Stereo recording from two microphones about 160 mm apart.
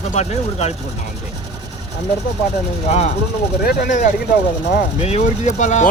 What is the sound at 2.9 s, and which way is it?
Speech, 40° left (ahead or behind).